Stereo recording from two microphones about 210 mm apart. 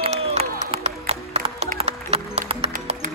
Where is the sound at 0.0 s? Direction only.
30° right (ahead or behind).